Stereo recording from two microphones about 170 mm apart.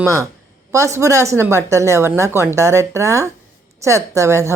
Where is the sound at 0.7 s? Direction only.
15° right (ahead or behind).